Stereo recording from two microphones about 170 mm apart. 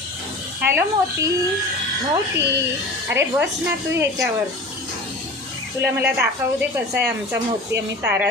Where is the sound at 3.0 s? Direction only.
15° right (ahead or behind).